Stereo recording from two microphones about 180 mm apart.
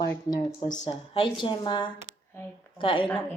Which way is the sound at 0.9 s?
30° left (ahead or behind).